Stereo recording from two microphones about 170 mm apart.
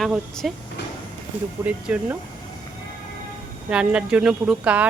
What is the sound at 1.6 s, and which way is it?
Speech, 10° right (ahead or behind).